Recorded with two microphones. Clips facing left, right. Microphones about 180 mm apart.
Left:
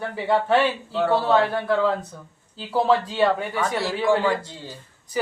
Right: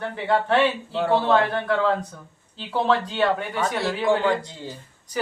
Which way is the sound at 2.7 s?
5° left (ahead or behind).